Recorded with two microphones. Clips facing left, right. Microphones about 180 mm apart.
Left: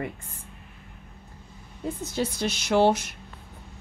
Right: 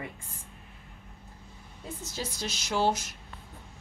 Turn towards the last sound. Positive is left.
turn(degrees=65)  # may be behind; listen again after turning